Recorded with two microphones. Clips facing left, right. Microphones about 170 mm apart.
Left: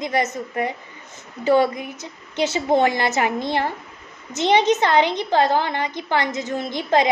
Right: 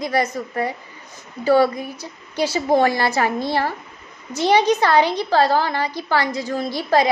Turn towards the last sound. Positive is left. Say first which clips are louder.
# right 1 dB
turn(degrees=20)  # may be behind; listen again after turning